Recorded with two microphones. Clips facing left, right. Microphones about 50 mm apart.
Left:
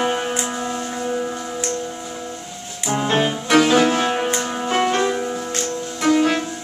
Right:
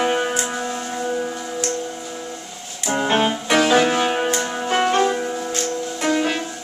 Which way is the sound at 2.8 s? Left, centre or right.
Centre.